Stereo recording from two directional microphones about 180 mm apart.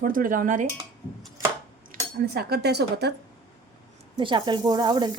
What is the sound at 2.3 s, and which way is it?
Speech, 65° right (ahead or behind).